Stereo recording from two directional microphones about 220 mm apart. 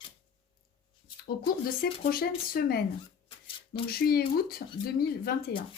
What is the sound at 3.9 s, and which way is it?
Speech, 45° left (ahead or behind).